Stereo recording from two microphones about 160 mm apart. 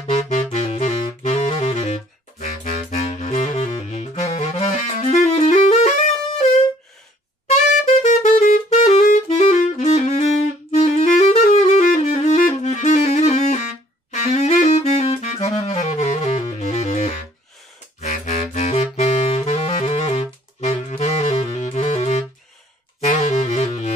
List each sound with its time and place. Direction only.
0.0 s saxophone: 45° left (ahead or behind)
7.4 s saxophone: 45° left (ahead or behind)
18.1 s saxophone: 45° left (ahead or behind)
22.9 s music: 45° left (ahead or behind)